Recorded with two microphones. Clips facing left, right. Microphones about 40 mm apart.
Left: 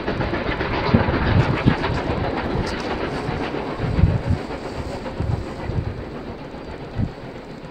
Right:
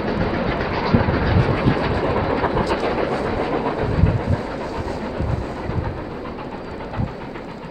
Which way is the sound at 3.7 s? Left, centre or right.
Centre.